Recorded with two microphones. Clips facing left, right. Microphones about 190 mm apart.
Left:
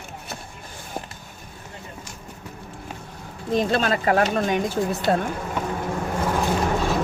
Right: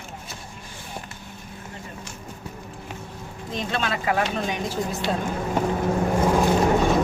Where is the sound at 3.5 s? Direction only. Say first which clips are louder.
Left 6 dB; 40° left (ahead or behind).